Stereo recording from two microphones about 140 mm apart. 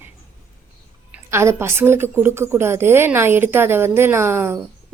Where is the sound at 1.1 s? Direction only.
20° right (ahead or behind).